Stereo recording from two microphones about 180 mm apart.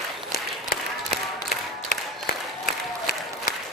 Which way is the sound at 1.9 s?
55° left (ahead or behind).